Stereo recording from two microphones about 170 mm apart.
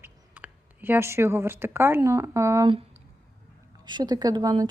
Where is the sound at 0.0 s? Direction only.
10° right (ahead or behind).